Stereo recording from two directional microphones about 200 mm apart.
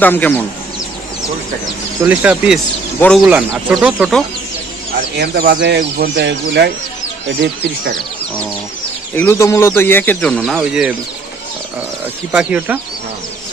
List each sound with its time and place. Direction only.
0.0 s speech: 10° left (ahead or behind)
2.0 s speech: 5° right (ahead or behind)
5.1 s speech: 55° right (ahead or behind)
9.1 s speech: 10° left (ahead or behind)
12.3 s speech: 5° right (ahead or behind)